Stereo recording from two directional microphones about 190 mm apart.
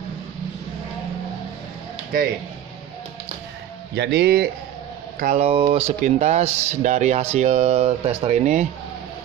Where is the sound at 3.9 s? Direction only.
60° right (ahead or behind).